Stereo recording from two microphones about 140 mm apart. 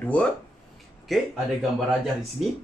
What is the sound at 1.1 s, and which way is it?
Speech, centre (ahead or behind).